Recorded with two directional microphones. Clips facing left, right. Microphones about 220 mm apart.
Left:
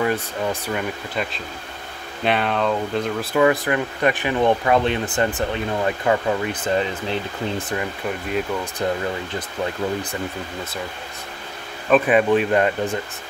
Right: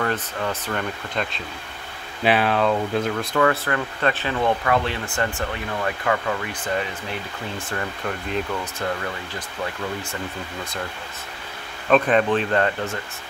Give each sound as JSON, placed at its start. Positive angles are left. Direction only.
{"t": 0.0, "sound": "speech", "side_deg": 15}
{"t": 2.2, "sound": "speech", "side_deg": -5}
{"t": 3.3, "sound": "speech", "side_deg": 15}
{"t": 7.7, "sound": "speech", "side_deg": 15}
{"t": 11.9, "sound": "speech", "side_deg": 10}